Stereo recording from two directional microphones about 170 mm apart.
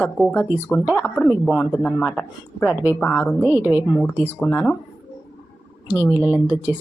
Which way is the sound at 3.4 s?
10° right (ahead or behind).